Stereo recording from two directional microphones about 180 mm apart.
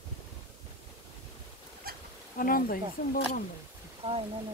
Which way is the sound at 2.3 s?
50° left (ahead or behind).